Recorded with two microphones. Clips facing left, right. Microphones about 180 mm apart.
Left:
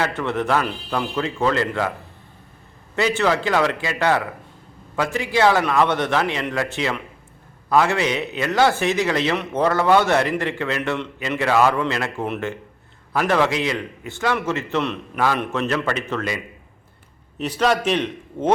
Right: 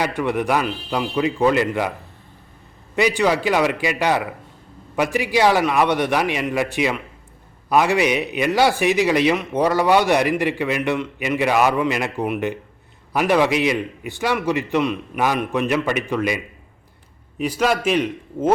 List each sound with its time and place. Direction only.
0.0 s speech: 15° right (ahead or behind)
3.2 s speech: 15° right (ahead or behind)
17.6 s speech: 10° right (ahead or behind)